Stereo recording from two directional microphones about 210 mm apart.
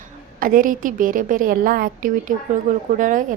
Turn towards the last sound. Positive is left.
turn(degrees=-40)  # may be behind; listen again after turning